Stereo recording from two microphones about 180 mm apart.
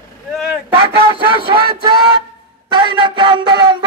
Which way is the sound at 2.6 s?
25° right (ahead or behind).